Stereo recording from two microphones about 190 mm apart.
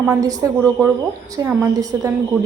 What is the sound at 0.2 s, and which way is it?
A woman's voice, 20° right (ahead or behind).